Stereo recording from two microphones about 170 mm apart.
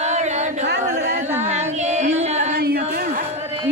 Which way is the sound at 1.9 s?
45° right (ahead or behind).